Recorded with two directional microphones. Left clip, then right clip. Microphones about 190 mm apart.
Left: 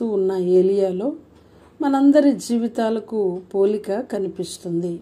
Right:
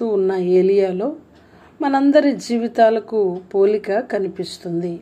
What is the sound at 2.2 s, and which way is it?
A woman's voice, 25° left (ahead or behind).